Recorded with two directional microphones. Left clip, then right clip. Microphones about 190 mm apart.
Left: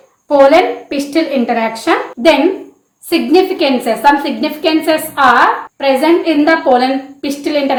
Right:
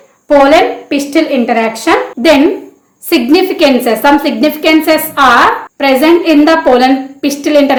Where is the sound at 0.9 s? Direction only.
25° right (ahead or behind).